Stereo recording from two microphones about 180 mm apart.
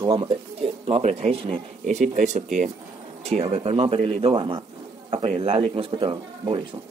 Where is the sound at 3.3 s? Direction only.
35° right (ahead or behind).